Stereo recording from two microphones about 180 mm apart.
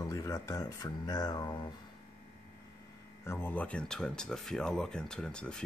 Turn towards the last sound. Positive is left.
turn(degrees=5)  # may be behind; listen again after turning